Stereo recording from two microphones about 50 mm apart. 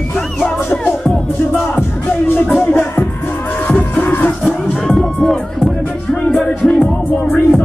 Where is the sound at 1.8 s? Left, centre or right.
Left.